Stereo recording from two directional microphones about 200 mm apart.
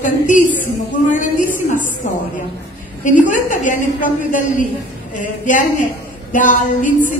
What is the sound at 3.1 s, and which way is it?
A woman's voice, 40° left (ahead or behind).